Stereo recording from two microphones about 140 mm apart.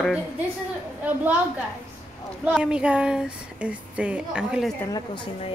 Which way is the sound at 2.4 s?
5° right (ahead or behind).